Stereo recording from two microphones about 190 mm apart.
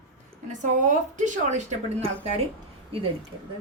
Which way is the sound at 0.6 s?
40° right (ahead or behind).